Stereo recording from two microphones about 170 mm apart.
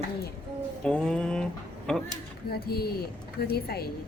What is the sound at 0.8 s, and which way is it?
Speech, 5° left (ahead or behind).